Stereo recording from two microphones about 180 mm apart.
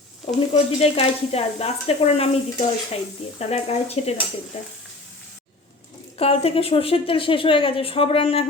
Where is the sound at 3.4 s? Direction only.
35° left (ahead or behind).